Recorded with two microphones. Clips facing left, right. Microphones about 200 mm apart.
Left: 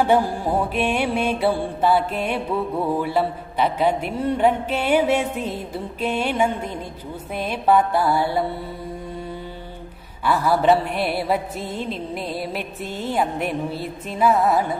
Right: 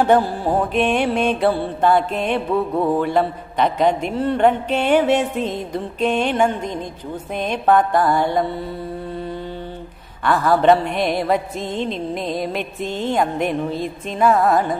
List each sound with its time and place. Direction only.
0.0 s music: 10° left (ahead or behind)
10.2 s music: 10° left (ahead or behind)